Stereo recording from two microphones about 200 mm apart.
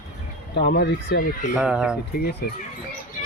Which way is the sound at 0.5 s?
55° left (ahead or behind).